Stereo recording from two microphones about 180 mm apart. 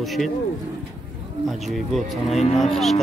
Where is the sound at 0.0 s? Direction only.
Centre (ahead or behind).